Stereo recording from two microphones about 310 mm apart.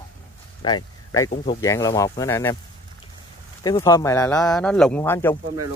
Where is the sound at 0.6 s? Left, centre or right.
Centre.